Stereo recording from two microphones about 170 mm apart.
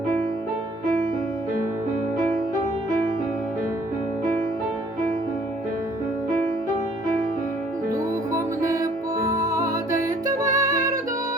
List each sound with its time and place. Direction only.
7.9 s music: 20° right (ahead or behind)